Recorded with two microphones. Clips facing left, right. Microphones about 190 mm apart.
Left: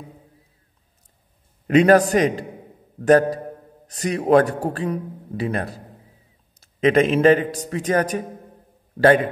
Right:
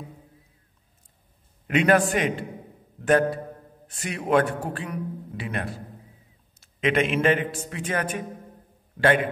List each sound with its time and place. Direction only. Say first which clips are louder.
1.7 s a man's voice: left 6 dB; 35° left (ahead or behind)